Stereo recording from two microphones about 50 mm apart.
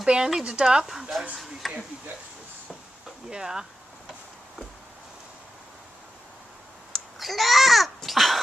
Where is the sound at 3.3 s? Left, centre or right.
Centre.